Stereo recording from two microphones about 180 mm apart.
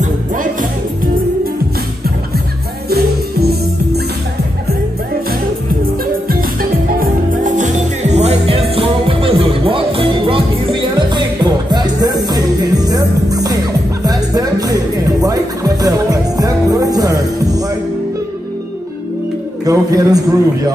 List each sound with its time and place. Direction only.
0.0 s music: 45° right (ahead or behind)
2.9 s music: 60° right (ahead or behind)
6.2 s music: 55° right (ahead or behind); by 17.6 s 20° right (ahead or behind)
19.6 s a man's voice: 20° right (ahead or behind)